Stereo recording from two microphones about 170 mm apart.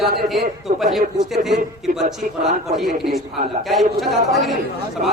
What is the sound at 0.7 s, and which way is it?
Speech, 50° right (ahead or behind).